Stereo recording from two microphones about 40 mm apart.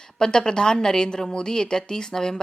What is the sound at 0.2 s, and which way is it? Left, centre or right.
A woman's voice, centre.